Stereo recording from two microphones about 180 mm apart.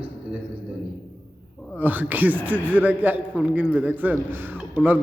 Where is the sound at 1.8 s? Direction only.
10° right (ahead or behind).